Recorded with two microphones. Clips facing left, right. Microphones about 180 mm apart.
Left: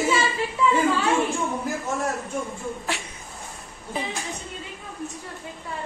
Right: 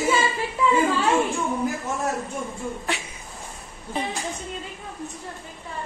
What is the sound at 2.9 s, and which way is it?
Speech, centre (ahead or behind).